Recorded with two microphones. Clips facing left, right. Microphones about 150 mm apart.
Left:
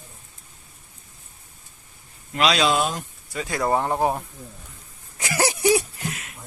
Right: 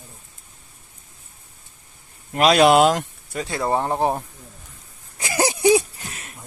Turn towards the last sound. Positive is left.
turn(degrees=-20)  # may be behind; listen again after turning